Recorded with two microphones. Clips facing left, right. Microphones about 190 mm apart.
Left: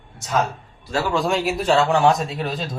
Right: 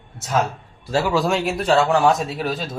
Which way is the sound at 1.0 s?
Centre (ahead or behind).